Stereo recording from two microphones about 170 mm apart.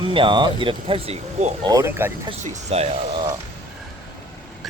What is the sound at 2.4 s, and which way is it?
Speech, 40° right (ahead or behind).